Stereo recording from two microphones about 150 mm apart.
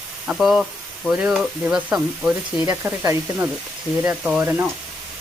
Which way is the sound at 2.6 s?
20° right (ahead or behind).